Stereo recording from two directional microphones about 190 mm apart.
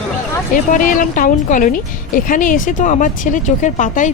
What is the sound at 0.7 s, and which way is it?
Speech, 45° left (ahead or behind).